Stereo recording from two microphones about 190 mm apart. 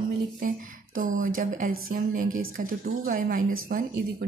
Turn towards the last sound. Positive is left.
turn(degrees=-50)  # may be behind; listen again after turning